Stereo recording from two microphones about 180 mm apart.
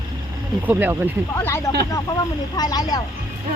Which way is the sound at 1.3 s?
15° left (ahead or behind).